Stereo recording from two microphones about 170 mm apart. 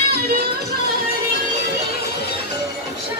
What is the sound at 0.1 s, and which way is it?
Music, 70° right (ahead or behind).